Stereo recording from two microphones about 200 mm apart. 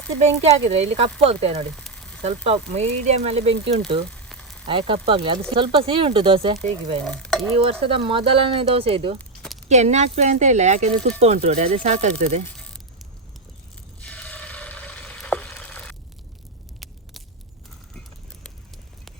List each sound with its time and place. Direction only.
0.4 s speech: 30° right (ahead or behind)
1.7 s frying: centre (ahead or behind)
2.2 s speech: 30° right (ahead or behind)
4.1 s frying: 5° left (ahead or behind)
4.6 s speech: 25° right (ahead or behind)
7.0 s speech: 5° left (ahead or behind)
7.6 s speech: 25° right (ahead or behind)
9.1 s a sound: 5° left (ahead or behind)
9.6 s speech: 35° right (ahead or behind)
12.5 s a sound: 5° left (ahead or behind)